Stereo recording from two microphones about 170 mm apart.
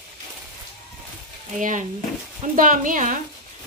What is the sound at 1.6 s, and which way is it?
A woman's voice, 50° right (ahead or behind).